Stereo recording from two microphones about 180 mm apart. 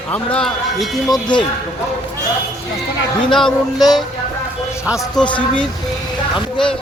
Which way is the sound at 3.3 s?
Centre (ahead or behind).